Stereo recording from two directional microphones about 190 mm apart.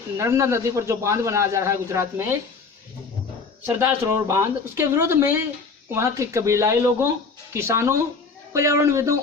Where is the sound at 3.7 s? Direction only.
15° right (ahead or behind).